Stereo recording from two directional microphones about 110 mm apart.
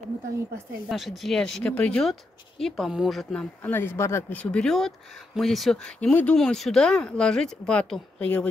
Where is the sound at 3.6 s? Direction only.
20° left (ahead or behind).